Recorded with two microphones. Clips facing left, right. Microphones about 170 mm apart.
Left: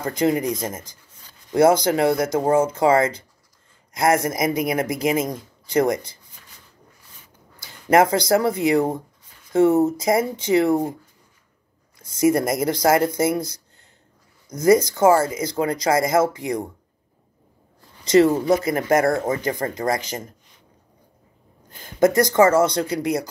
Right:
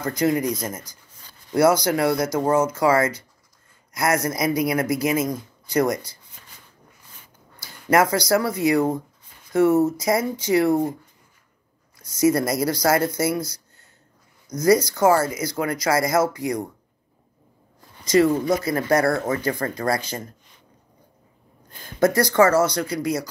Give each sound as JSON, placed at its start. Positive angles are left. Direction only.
{"t": 0.0, "sound": "speech", "side_deg": 25}
{"t": 7.9, "sound": "speech", "side_deg": 25}
{"t": 12.1, "sound": "speech", "side_deg": 20}
{"t": 18.0, "sound": "speech", "side_deg": 25}
{"t": 21.8, "sound": "speech", "side_deg": 20}